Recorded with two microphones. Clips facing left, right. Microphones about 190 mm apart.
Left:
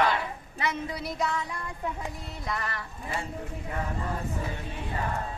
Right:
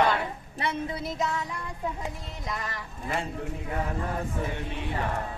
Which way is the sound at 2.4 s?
15° right (ahead or behind).